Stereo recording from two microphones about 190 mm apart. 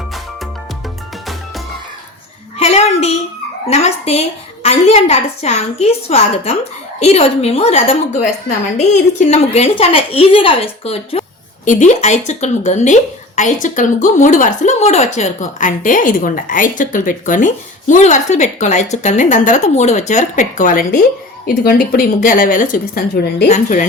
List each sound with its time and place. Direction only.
2.6 s a sound: 35° left (ahead or behind)
3.7 s speech: 35° left (ahead or behind)
9.3 s speech: 30° left (ahead or behind); by 23.5 s 55° left (ahead or behind)
23.5 s speech: 40° left (ahead or behind)